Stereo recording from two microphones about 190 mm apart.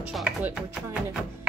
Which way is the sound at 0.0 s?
5° right (ahead or behind).